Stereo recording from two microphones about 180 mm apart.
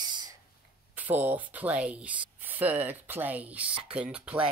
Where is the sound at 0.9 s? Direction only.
10° right (ahead or behind).